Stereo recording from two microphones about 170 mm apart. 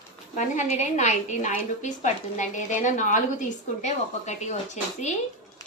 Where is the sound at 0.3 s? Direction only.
45° left (ahead or behind).